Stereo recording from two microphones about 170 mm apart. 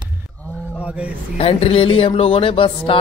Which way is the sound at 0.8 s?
5° right (ahead or behind).